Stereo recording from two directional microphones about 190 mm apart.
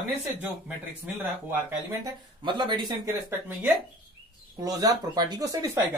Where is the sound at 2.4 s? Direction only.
25° right (ahead or behind).